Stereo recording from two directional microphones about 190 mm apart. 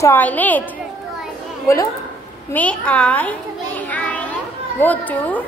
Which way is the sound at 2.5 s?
5° left (ahead or behind).